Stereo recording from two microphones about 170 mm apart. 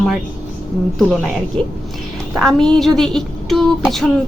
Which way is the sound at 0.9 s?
Centre (ahead or behind).